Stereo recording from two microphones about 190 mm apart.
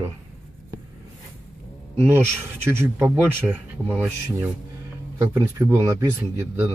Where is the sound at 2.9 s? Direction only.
10° right (ahead or behind).